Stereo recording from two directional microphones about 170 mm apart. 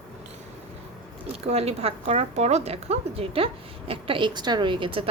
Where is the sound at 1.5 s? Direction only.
40° right (ahead or behind).